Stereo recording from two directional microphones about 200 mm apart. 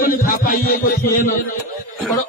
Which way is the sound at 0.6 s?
45° left (ahead or behind).